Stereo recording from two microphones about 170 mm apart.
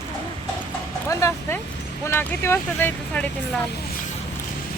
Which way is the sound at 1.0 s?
15° left (ahead or behind).